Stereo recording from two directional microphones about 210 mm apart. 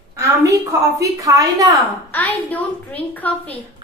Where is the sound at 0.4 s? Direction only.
15° right (ahead or behind).